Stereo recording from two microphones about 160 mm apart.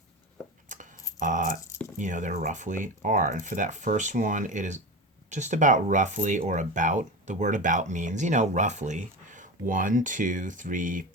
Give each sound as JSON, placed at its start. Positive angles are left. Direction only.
{"t": 0.7, "sound": "keys jangling", "side_deg": -50}
{"t": 1.2, "sound": "dog", "side_deg": -55}
{"t": 2.0, "sound": "speech", "side_deg": -50}